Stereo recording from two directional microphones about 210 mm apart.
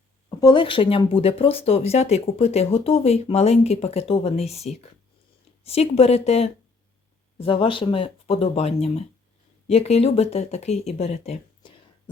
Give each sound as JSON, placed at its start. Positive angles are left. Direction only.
{"t": 0.4, "sound": "speech", "side_deg": 25}